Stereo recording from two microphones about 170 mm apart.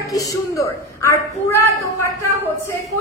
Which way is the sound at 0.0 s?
20° left (ahead or behind).